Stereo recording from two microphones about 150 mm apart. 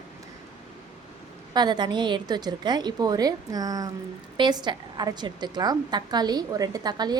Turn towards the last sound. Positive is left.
turn(degrees=-25)  # may be behind; listen again after turning